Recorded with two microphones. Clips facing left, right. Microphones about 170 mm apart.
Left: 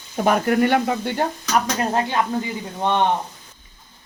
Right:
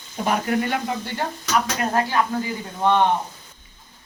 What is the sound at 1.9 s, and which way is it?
Speech, 20° left (ahead or behind).